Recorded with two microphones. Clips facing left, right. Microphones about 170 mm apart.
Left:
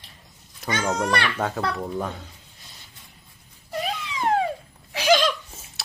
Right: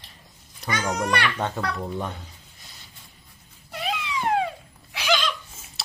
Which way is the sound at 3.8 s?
40° left (ahead or behind).